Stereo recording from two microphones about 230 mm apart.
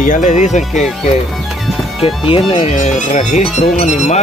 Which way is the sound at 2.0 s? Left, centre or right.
Left.